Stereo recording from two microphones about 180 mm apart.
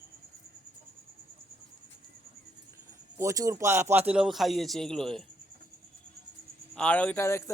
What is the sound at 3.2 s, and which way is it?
A man's voice, 15° right (ahead or behind).